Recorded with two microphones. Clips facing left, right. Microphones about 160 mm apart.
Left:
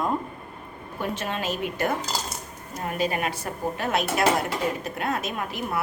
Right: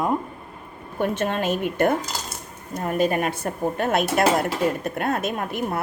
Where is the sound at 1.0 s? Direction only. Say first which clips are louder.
Right 6 dB; 50° right (ahead or behind).